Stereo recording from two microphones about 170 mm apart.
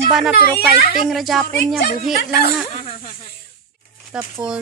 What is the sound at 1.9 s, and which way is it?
Speech, 60° left (ahead or behind).